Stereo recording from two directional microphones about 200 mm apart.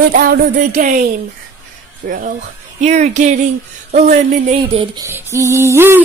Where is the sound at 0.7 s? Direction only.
40° right (ahead or behind).